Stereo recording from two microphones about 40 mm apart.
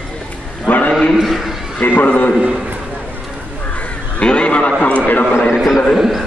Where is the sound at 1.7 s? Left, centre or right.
Left.